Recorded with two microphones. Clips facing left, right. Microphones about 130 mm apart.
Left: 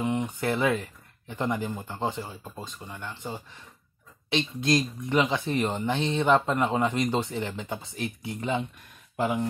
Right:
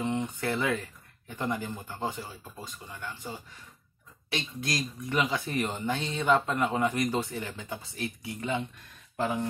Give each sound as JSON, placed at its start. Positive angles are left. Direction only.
{"t": 0.0, "sound": "speech", "side_deg": 15}